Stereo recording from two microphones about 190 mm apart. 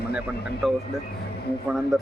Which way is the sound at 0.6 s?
Centre (ahead or behind).